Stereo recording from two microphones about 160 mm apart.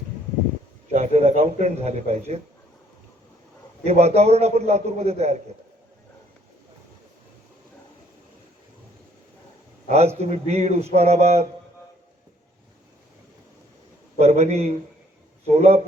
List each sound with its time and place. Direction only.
0.9 s a man's voice: 45° right (ahead or behind)
3.8 s a man's voice: 40° right (ahead or behind)
9.9 s a man's voice: 40° right (ahead or behind)
14.2 s a man's voice: 40° right (ahead or behind)